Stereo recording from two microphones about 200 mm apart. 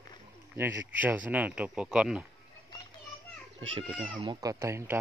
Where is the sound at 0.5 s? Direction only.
10° right (ahead or behind).